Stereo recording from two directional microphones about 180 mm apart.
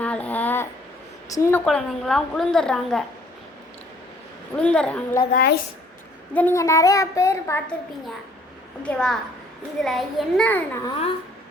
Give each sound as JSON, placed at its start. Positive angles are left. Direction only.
{"t": 0.0, "sound": "a sound", "side_deg": 10}
{"t": 1.3, "sound": "a child's voice", "side_deg": 15}
{"t": 1.6, "sound": "a woman's voice", "side_deg": 0}
{"t": 4.5, "sound": "a child's voice", "side_deg": 5}
{"t": 5.3, "sound": "a woman's voice", "side_deg": 60}
{"t": 6.3, "sound": "a child's voice", "side_deg": 10}
{"t": 8.8, "sound": "a woman's voice", "side_deg": 5}